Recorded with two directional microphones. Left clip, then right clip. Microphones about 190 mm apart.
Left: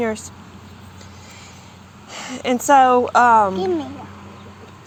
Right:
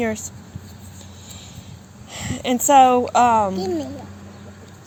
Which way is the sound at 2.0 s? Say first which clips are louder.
Left 2 dB; 50° right (ahead or behind).